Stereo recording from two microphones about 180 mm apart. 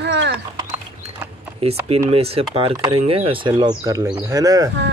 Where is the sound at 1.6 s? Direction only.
35° right (ahead or behind).